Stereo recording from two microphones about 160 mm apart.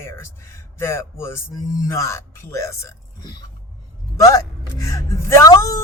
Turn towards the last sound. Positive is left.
turn(degrees=20)  # may be behind; listen again after turning